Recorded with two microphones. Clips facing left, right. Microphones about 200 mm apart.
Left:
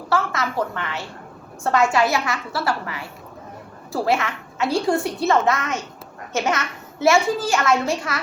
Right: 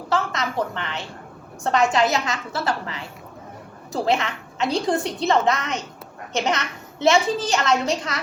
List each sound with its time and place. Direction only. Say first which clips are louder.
0.1 s a child's voice: left 1 dB; 20° right (ahead or behind)